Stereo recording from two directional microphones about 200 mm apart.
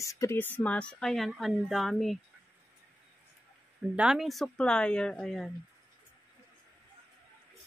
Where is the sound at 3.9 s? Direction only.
5° right (ahead or behind).